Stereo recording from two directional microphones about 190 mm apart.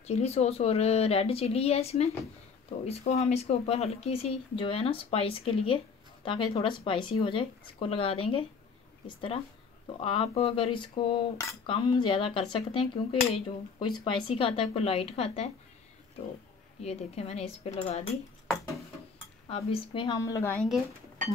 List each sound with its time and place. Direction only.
0.0 s speech: 35° left (ahead or behind)
6.2 s cutlery: 25° left (ahead or behind)
13.3 s speech: 25° left (ahead or behind)
16.8 s speech: 30° left (ahead or behind)
19.5 s cutlery: 30° left (ahead or behind)
20.5 s speech: centre (ahead or behind)